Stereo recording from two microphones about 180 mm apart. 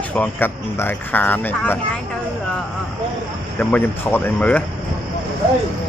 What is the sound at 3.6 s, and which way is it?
Speech, 10° left (ahead or behind).